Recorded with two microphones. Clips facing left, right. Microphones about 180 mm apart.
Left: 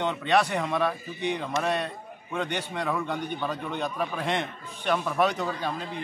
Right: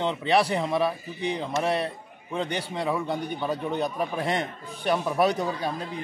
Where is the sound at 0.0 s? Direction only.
30° right (ahead or behind).